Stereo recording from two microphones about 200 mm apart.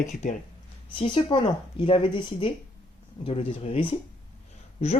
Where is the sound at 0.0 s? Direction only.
40° left (ahead or behind).